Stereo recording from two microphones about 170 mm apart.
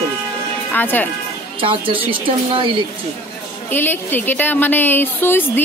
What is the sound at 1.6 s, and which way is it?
Speech, 30° right (ahead or behind).